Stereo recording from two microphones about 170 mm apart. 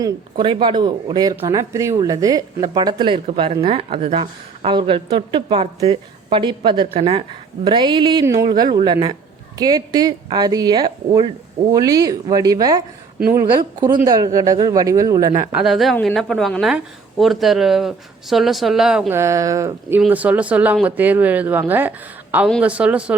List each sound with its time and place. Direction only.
0.0 s a woman's voice: 30° right (ahead or behind)
14.0 s a woman's voice: 20° right (ahead or behind)
15.5 s a woman's voice: centre (ahead or behind)
19.2 s a woman's voice: 20° right (ahead or behind)